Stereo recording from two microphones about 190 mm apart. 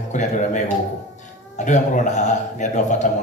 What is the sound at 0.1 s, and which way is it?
A man's voice, 40° left (ahead or behind).